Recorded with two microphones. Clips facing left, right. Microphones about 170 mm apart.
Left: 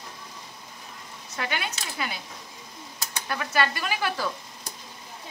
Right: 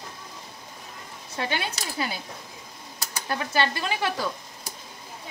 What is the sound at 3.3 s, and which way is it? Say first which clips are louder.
Speech: right 1 dB; 25° right (ahead or behind).